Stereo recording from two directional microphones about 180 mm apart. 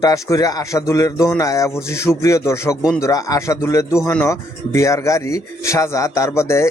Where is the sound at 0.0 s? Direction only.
20° left (ahead or behind).